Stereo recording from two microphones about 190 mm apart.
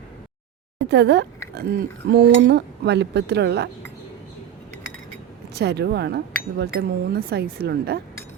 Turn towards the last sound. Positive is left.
turn(degrees=-55)  # may be behind; listen again after turning